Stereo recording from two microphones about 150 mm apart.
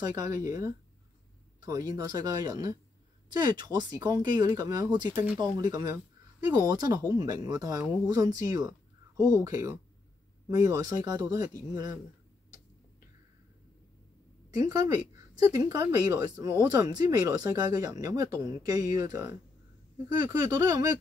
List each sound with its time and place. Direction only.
0.0 s speech: 25° right (ahead or behind)
14.6 s speech: 25° right (ahead or behind)